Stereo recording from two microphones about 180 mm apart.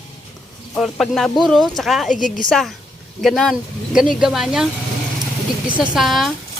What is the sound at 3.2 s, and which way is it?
Speech, centre (ahead or behind).